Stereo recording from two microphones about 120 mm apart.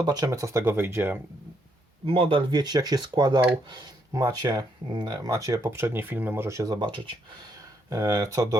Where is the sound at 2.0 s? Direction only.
50° right (ahead or behind).